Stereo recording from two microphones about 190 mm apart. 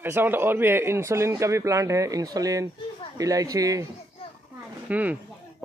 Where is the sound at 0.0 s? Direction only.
10° right (ahead or behind).